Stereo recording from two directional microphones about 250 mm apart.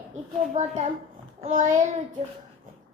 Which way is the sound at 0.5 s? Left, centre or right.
Right.